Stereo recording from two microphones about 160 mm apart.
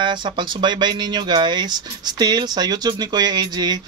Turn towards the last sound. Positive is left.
turn(degrees=-25)  # may be behind; listen again after turning